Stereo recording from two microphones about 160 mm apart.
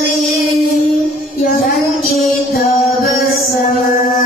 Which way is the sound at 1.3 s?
65° left (ahead or behind).